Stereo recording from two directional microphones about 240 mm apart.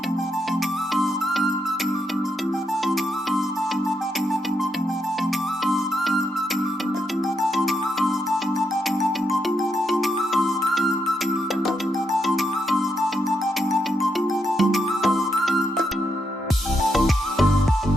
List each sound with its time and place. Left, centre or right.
5.6 s music: centre
9.9 s music: centre
14.6 s music: centre